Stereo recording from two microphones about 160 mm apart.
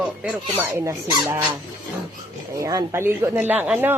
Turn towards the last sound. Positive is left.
turn(degrees=-10)  # may be behind; listen again after turning